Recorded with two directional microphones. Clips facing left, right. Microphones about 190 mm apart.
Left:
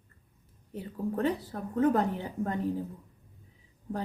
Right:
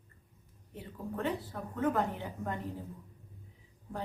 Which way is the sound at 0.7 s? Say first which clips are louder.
Left 7 dB; 40° left (ahead or behind).